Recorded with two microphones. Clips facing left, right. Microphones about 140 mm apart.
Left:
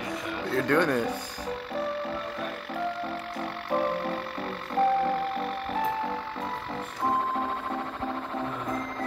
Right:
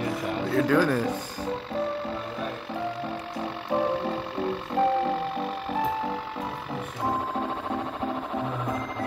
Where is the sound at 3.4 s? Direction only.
20° right (ahead or behind).